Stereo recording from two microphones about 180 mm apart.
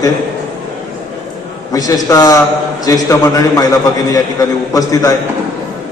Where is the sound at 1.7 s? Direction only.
20° left (ahead or behind).